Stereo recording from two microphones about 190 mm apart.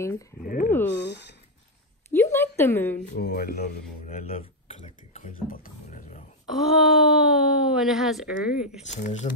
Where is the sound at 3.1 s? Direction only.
60° left (ahead or behind).